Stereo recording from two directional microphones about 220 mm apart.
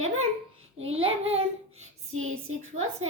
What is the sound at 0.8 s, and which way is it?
Child singing, 25° right (ahead or behind).